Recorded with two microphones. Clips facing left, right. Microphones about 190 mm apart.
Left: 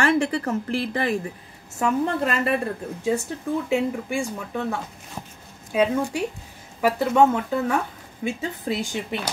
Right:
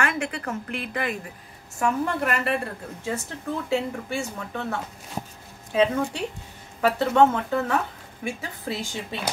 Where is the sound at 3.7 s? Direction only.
15° left (ahead or behind).